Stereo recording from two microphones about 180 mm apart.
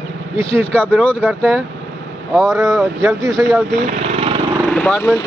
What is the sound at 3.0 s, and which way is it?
Speech, 15° right (ahead or behind).